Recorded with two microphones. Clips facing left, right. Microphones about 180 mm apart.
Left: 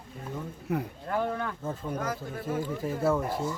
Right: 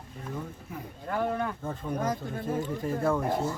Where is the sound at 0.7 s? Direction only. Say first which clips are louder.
Left 14 dB; 70° left (ahead or behind).